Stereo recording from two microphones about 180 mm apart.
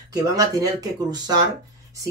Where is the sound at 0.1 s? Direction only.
20° right (ahead or behind).